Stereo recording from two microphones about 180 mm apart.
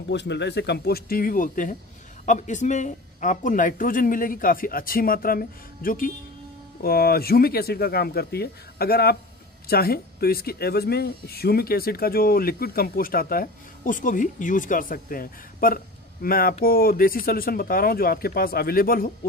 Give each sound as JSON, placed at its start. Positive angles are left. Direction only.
{"t": 0.1, "sound": "speech", "side_deg": 75}